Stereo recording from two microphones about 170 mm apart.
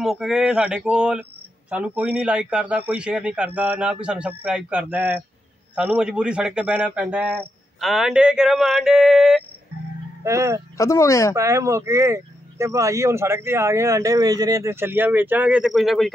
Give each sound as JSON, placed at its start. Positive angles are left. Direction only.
{"t": 0.0, "sound": "a sound", "side_deg": 0}
{"t": 1.7, "sound": "speech", "side_deg": -10}
{"t": 7.8, "sound": "a sound", "side_deg": 0}
{"t": 10.2, "sound": "speech", "side_deg": -15}
{"t": 10.8, "sound": "speech", "side_deg": 20}
{"t": 11.3, "sound": "speech", "side_deg": -20}